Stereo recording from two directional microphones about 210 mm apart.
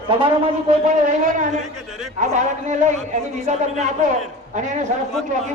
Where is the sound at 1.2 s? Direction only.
40° right (ahead or behind).